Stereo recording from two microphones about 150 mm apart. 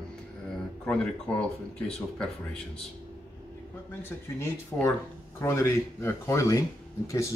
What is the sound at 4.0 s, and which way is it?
Speech, 15° left (ahead or behind).